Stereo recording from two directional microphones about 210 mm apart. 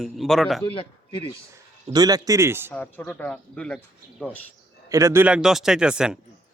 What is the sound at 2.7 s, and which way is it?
Speech, 5° left (ahead or behind).